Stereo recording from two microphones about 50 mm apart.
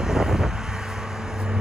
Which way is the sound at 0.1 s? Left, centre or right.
Centre.